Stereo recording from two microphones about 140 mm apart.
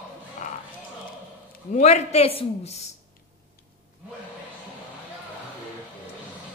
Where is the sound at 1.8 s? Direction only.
50° left (ahead or behind).